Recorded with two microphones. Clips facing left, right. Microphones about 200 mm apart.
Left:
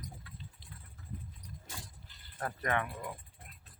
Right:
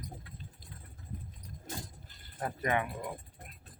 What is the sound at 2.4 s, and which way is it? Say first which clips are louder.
Speech: right 2 dB; 15° right (ahead or behind).